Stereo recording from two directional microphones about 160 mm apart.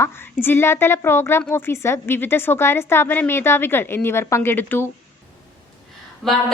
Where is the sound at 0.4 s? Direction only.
15° left (ahead or behind).